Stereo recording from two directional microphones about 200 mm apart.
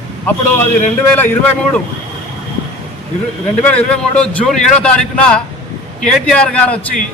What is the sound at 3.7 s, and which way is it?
A man's voice, 5° left (ahead or behind).